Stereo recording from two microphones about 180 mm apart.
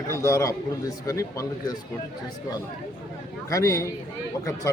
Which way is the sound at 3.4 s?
15° left (ahead or behind).